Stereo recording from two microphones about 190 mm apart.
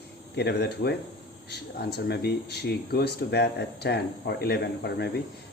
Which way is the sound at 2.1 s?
60° left (ahead or behind).